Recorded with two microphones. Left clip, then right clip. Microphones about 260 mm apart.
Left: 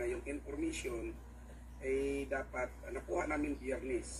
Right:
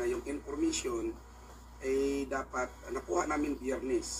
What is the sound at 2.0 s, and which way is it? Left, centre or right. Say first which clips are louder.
A man's voice: right 4 dB; right.